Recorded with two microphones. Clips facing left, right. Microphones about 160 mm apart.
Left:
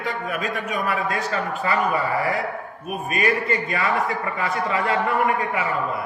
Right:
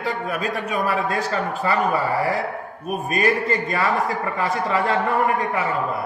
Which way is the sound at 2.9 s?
35° right (ahead or behind).